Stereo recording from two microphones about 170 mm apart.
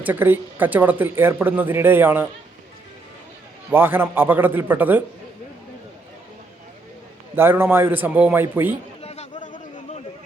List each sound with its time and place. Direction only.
0.0 s speech: 10° right (ahead or behind)
3.7 s speech: 10° right (ahead or behind)
7.3 s speech: 10° right (ahead or behind)
9.0 s a sound: 40° left (ahead or behind)